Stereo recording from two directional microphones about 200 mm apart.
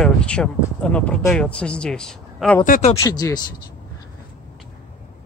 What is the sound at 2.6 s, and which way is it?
Speech, 45° left (ahead or behind).